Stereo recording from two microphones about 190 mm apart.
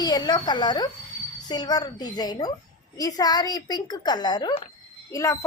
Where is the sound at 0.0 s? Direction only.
20° left (ahead or behind).